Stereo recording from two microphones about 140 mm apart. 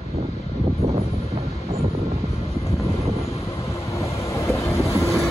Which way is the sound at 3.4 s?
20° left (ahead or behind).